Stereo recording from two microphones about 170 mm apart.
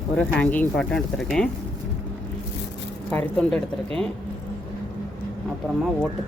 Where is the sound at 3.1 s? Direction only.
5° left (ahead or behind).